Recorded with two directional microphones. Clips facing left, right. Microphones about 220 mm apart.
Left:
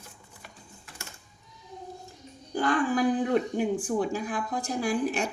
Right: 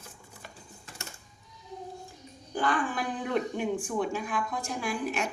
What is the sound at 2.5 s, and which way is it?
A child's voice, 40° left (ahead or behind).